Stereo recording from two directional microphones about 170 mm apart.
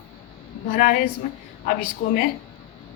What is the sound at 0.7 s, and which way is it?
Speech, 50° left (ahead or behind).